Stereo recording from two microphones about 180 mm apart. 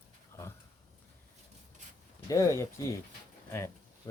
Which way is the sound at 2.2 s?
15° left (ahead or behind).